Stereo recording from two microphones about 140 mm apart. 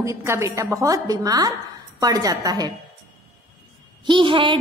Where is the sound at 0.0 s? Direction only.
20° right (ahead or behind).